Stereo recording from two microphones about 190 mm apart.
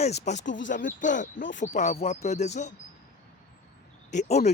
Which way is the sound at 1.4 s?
75° left (ahead or behind).